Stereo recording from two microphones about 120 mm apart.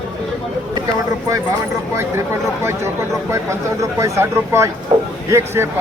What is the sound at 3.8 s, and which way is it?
Speech, 25° right (ahead or behind).